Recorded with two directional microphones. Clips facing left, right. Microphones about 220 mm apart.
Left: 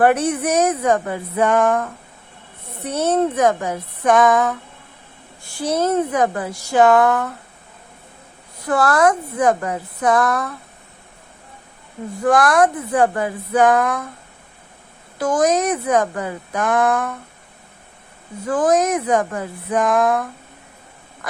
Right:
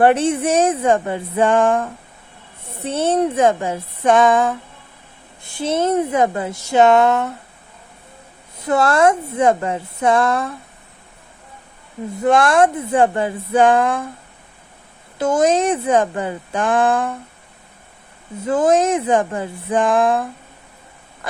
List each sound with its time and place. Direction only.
0.0 s speech: 25° right (ahead or behind)
8.5 s speech: 20° right (ahead or behind)
12.2 s speech: 25° right (ahead or behind)
15.2 s speech: 25° right (ahead or behind)
18.4 s speech: 25° right (ahead or behind)